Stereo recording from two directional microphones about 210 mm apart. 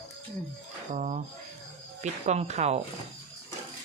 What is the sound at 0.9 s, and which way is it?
Speech, 35° right (ahead or behind).